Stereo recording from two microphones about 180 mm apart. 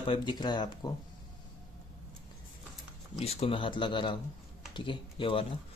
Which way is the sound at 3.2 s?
35° left (ahead or behind).